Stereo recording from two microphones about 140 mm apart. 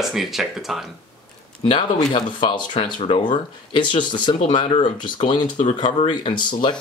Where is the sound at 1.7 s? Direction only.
35° left (ahead or behind).